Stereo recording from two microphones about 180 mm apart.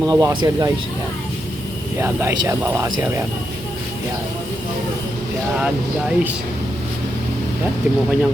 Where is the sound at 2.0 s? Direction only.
15° right (ahead or behind).